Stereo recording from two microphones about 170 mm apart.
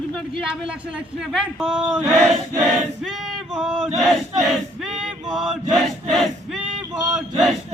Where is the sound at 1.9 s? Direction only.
15° right (ahead or behind).